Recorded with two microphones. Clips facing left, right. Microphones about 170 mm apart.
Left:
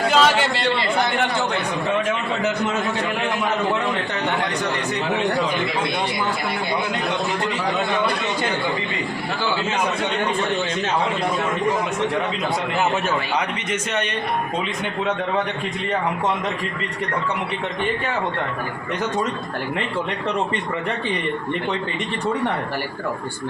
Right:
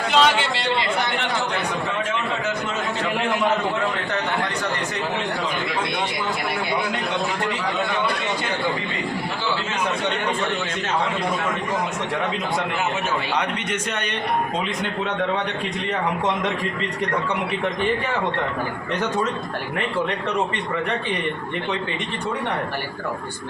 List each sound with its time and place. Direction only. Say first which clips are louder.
0.1 s chatter: right 1 dB; 45° left (ahead or behind)